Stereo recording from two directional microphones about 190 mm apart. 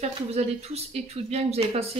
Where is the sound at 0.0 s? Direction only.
35° right (ahead or behind).